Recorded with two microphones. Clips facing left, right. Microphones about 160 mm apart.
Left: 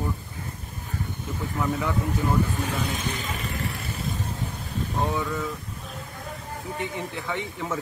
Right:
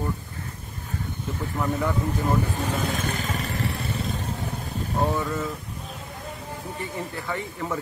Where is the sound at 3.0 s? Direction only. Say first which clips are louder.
Right 2 dB; 45° right (ahead or behind).